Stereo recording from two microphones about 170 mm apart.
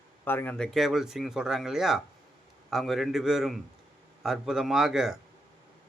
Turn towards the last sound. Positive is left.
turn(degrees=-5)  # may be behind; listen again after turning